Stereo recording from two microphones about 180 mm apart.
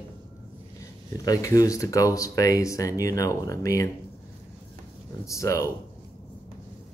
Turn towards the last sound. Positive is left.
turn(degrees=15)  # may be behind; listen again after turning